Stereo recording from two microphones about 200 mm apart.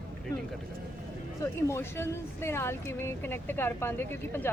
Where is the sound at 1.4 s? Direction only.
15° left (ahead or behind).